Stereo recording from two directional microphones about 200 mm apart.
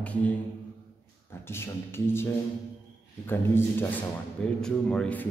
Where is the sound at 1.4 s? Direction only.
10° left (ahead or behind).